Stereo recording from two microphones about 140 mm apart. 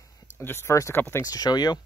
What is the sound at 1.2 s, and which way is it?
Speech, 30° left (ahead or behind).